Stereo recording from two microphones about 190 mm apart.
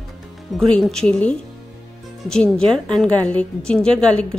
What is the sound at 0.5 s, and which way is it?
A woman's voice, centre (ahead or behind).